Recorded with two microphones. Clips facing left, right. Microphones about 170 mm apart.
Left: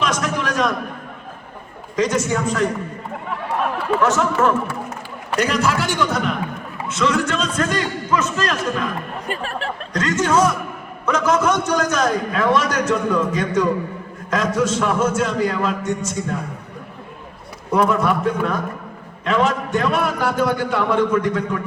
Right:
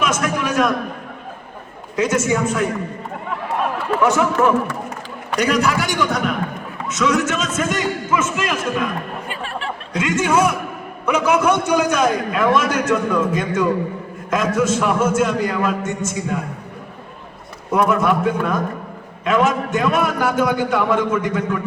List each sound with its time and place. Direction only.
0.0 s a sound: 5° right (ahead or behind)
2.0 s a man's voice: 5° right (ahead or behind)
3.6 s a sound: centre (ahead or behind)
4.0 s a man's voice: 10° right (ahead or behind)
4.4 s a man's voice: centre (ahead or behind)
9.2 s speech: 40° left (ahead or behind)
9.9 s a man's voice: 10° right (ahead or behind)
17.7 s a man's voice: centre (ahead or behind)